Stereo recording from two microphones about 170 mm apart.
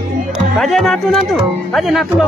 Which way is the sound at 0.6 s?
Centre (ahead or behind).